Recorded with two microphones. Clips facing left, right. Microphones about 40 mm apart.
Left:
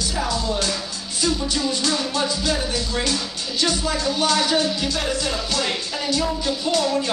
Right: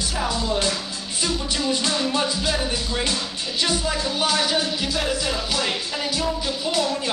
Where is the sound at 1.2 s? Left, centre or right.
Centre.